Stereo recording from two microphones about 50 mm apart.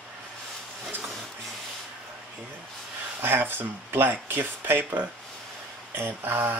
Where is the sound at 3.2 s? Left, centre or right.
Right.